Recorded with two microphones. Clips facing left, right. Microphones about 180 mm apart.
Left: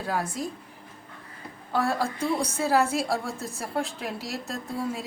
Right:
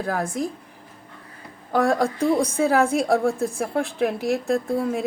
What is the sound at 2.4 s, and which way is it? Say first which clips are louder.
A woman's voice: right 5 dB; 55° right (ahead or behind).